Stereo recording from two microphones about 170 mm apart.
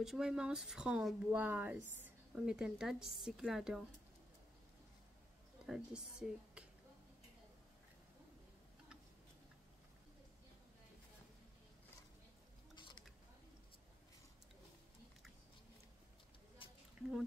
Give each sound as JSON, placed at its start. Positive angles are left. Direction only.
{"t": 0.0, "sound": "speech", "side_deg": -5}
{"t": 5.7, "sound": "speech", "side_deg": -5}
{"t": 12.7, "sound": "a sound", "side_deg": 25}